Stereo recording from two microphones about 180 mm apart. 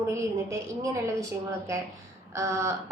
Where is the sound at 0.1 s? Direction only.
15° right (ahead or behind).